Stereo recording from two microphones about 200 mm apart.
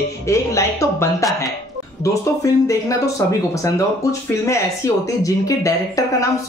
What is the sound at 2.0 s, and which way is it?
Speech, 15° left (ahead or behind).